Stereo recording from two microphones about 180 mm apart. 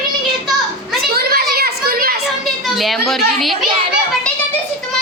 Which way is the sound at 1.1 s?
60° right (ahead or behind).